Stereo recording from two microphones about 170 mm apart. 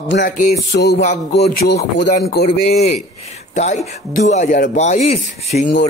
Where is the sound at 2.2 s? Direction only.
65° left (ahead or behind).